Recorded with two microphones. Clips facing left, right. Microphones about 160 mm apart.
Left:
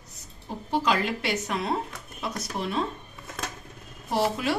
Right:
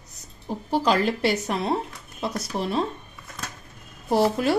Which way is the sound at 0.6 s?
35° right (ahead or behind).